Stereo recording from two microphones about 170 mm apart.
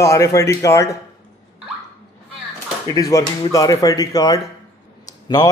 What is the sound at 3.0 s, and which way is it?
A man's voice, 20° left (ahead or behind).